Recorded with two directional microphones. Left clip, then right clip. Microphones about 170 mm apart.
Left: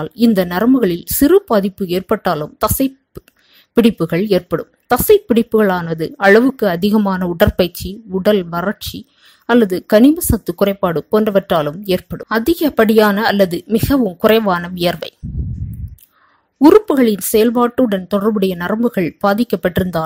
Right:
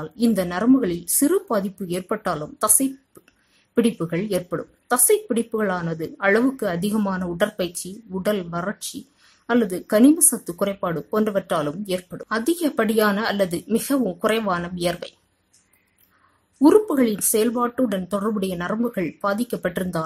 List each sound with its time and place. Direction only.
0.0 s speech: 35° left (ahead or behind)
16.5 s speech: 30° left (ahead or behind)